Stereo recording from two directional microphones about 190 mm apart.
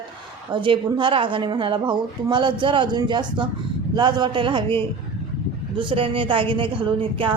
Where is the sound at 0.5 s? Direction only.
25° right (ahead or behind).